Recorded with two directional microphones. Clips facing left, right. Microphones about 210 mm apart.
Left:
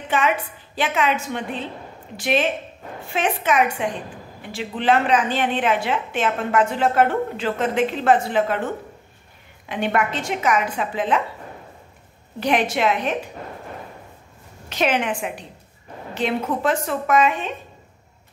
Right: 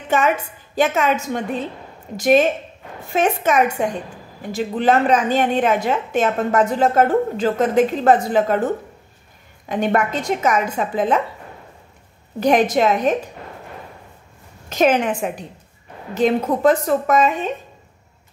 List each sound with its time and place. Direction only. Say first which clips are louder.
0.1 s a woman's voice: right 3 dB; 45° right (ahead or behind)
9.7 s speech: right 3 dB; 40° right (ahead or behind)
12.4 s a woman's voice: right 5 dB; 45° right (ahead or behind)
14.7 s a woman's voice: right 5 dB; 40° right (ahead or behind)